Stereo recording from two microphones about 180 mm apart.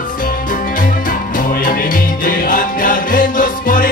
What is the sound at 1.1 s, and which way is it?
Music, 50° left (ahead or behind).